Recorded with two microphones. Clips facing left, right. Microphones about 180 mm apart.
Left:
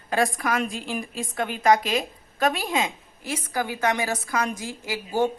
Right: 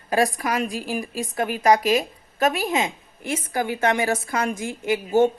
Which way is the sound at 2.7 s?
25° right (ahead or behind).